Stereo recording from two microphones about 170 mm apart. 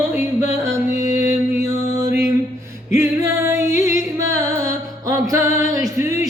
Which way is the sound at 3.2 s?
15° right (ahead or behind).